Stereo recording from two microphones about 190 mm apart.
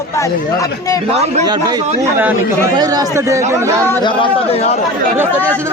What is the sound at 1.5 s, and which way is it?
Speech, 20° right (ahead or behind).